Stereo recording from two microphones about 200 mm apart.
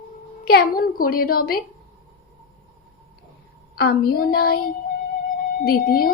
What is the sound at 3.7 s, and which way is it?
Speech, 50° left (ahead or behind).